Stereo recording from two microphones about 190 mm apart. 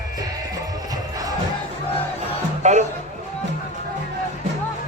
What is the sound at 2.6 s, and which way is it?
Music, 40° right (ahead or behind).